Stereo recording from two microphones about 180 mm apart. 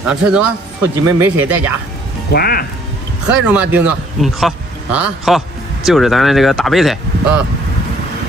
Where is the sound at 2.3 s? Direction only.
60° left (ahead or behind).